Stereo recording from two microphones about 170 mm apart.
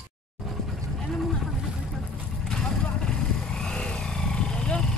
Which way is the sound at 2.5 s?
5° left (ahead or behind).